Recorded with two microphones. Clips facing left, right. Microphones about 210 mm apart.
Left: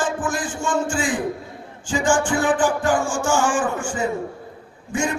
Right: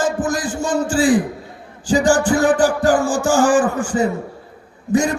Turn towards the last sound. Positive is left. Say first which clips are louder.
# right 7 dB
turn(degrees=-35)  # may be behind; listen again after turning